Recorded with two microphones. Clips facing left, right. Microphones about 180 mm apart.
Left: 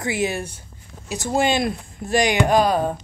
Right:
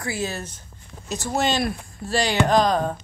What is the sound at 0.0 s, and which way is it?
Speech, 20° left (ahead or behind).